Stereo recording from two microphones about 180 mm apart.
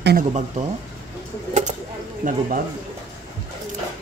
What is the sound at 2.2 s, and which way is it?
Speech, 45° right (ahead or behind).